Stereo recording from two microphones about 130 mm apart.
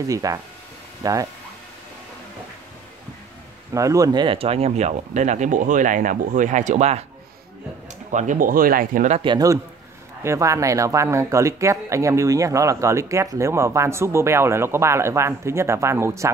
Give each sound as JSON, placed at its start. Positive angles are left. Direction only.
{"t": 0.0, "sound": "speech", "side_deg": -25}
{"t": 3.7, "sound": "speech", "side_deg": -25}
{"t": 8.1, "sound": "speech", "side_deg": -70}
{"t": 10.2, "sound": "speech", "side_deg": -25}